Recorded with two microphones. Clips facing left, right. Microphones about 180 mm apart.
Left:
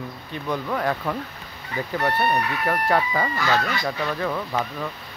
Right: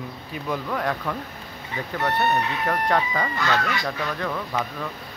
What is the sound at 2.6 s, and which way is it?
Speech, 5° left (ahead or behind).